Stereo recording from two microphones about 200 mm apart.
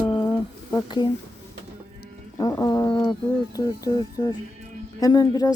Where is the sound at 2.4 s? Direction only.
15° left (ahead or behind).